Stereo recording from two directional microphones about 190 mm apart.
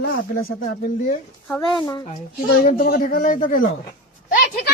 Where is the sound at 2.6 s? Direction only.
50° left (ahead or behind).